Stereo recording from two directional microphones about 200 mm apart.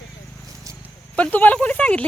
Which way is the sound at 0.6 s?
15° right (ahead or behind).